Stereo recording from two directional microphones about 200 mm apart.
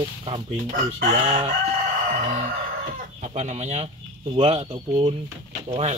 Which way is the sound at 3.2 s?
35° right (ahead or behind).